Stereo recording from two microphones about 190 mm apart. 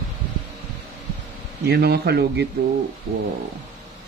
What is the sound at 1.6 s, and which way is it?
Speech, 60° right (ahead or behind).